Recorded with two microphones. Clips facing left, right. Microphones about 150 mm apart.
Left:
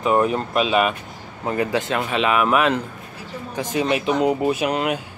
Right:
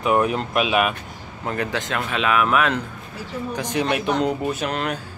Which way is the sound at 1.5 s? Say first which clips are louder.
Left 4 dB; 5° left (ahead or behind).